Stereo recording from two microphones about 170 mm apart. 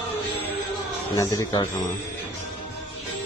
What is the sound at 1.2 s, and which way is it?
Speech, 20° left (ahead or behind).